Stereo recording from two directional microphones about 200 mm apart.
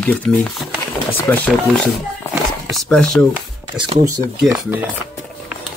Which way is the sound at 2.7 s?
Centre (ahead or behind).